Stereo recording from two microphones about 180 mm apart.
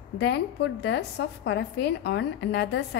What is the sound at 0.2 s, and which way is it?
A woman's voice, 65° left (ahead or behind).